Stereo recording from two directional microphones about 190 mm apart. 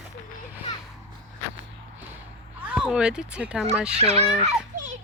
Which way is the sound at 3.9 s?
35° right (ahead or behind).